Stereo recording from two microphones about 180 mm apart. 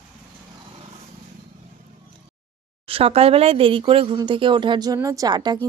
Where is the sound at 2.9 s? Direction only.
35° right (ahead or behind).